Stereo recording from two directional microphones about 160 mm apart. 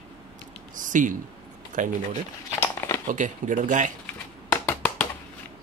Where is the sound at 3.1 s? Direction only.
50° right (ahead or behind).